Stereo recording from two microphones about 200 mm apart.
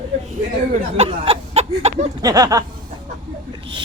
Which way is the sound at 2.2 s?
20° right (ahead or behind).